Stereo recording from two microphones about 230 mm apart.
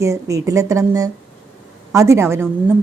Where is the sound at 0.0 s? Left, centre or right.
Centre.